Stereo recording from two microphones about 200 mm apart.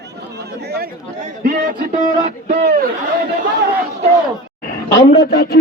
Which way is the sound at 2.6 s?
45° right (ahead or behind).